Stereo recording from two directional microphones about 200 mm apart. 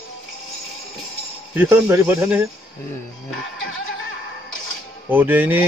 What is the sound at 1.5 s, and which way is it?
Speech, 15° right (ahead or behind).